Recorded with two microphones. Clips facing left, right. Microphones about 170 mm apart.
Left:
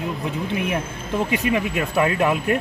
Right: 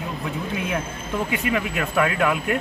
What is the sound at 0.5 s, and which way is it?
A man's voice, 20° left (ahead or behind).